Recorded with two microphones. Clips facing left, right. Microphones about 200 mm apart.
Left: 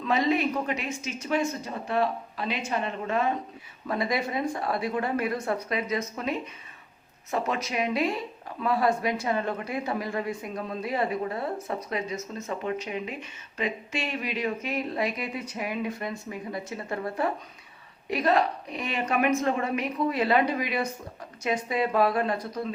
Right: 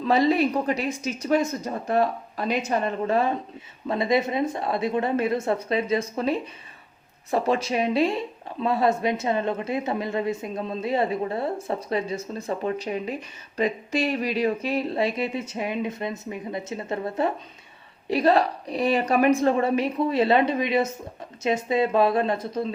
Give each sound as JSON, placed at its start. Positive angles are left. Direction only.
{"t": 0.0, "sound": "a woman's voice", "side_deg": -35}